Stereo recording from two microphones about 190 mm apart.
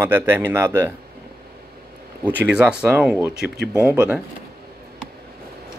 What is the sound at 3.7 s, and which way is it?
Speech, 10° right (ahead or behind).